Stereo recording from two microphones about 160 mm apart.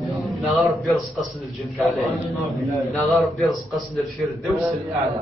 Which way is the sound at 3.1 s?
Centre (ahead or behind).